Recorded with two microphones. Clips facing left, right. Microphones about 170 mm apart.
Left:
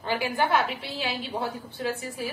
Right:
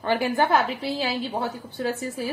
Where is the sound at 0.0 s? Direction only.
50° right (ahead or behind).